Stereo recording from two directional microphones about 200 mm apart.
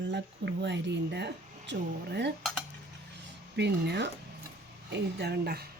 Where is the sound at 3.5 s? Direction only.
60° right (ahead or behind).